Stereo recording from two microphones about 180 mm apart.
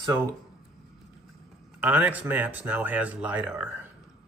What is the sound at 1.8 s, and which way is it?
Speech, 10° right (ahead or behind).